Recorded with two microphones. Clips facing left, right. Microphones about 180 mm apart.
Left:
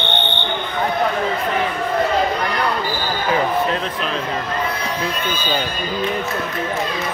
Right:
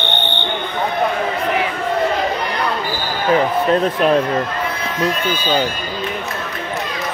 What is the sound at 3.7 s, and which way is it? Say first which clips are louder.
Speech: right 9 dB; 45° right (ahead or behind).